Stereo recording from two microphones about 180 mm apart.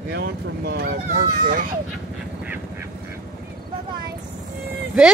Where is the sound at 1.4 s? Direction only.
50° right (ahead or behind).